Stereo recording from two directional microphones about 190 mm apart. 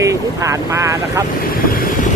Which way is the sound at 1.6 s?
50° left (ahead or behind).